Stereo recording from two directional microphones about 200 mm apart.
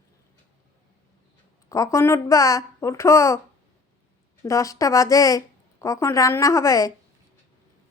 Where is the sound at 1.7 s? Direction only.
15° left (ahead or behind).